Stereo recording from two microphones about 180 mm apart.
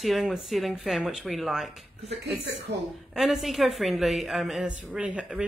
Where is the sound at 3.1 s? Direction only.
Centre (ahead or behind).